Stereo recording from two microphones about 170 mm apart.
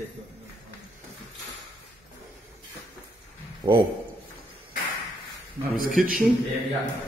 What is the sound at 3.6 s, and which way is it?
Speech, 20° right (ahead or behind).